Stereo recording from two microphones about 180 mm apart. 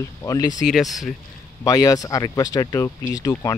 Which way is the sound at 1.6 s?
20° left (ahead or behind).